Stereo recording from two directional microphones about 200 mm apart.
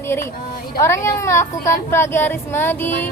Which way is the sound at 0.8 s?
15° left (ahead or behind).